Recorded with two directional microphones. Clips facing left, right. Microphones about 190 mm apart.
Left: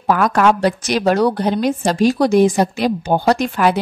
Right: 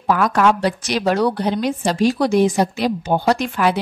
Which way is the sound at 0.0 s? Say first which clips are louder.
Left 2 dB; 50° left (ahead or behind).